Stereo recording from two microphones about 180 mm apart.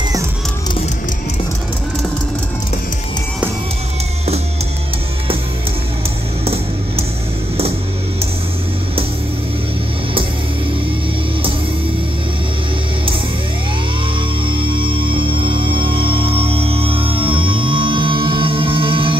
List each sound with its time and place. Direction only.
6.4 s music: 35° right (ahead or behind)
14.4 s music: 25° right (ahead or behind)